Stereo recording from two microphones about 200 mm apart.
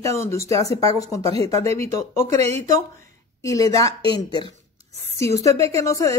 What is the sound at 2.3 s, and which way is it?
Speech, 35° right (ahead or behind).